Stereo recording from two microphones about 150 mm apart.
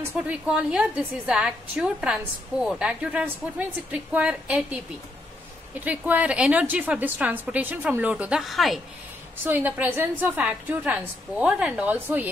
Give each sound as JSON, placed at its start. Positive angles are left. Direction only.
{"t": 0.0, "sound": "a woman's voice", "side_deg": -10}
{"t": 5.8, "sound": "a woman's voice", "side_deg": -10}
{"t": 9.4, "sound": "a woman's voice", "side_deg": -10}